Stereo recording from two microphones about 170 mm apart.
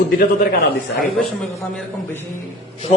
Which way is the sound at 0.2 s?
75° left (ahead or behind).